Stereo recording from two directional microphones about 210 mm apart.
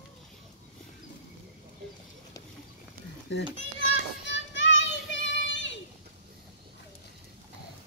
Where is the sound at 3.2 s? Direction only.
60° left (ahead or behind).